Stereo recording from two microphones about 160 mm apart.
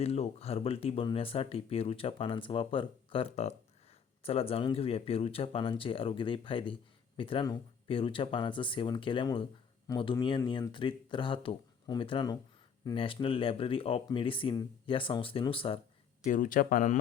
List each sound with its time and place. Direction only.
0.0 s speech: 40° left (ahead or behind)
16.2 s speech: 55° left (ahead or behind)